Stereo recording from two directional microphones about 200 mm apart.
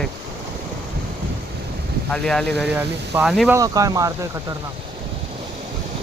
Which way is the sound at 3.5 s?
15° right (ahead or behind).